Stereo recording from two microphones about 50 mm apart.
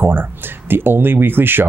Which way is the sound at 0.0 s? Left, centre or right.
Right.